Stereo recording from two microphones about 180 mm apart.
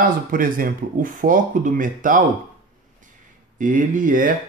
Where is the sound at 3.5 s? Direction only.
45° right (ahead or behind).